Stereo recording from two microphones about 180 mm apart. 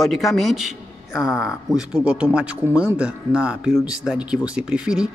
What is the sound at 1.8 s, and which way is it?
A man's voice, 5° right (ahead or behind).